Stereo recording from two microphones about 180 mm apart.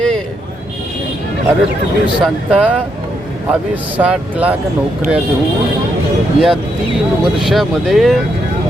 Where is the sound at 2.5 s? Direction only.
10° right (ahead or behind).